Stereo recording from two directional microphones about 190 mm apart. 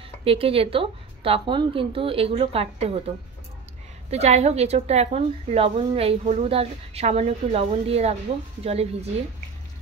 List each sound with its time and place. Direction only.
0.2 s a woman's voice: 30° right (ahead or behind)
4.1 s a woman's voice: 35° right (ahead or behind)